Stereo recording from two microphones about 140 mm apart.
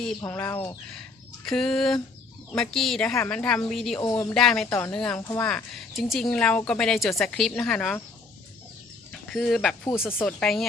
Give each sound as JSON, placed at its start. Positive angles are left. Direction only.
{"t": 0.3, "sound": "speech", "side_deg": 10}
{"t": 4.1, "sound": "speech", "side_deg": 20}
{"t": 4.4, "sound": "speech", "side_deg": 0}
{"t": 4.7, "sound": "speech", "side_deg": 15}
{"t": 4.9, "sound": "speech", "side_deg": 5}
{"t": 9.1, "sound": "speech", "side_deg": 0}
{"t": 10.1, "sound": "speech", "side_deg": 15}
{"t": 10.4, "sound": "speech", "side_deg": 0}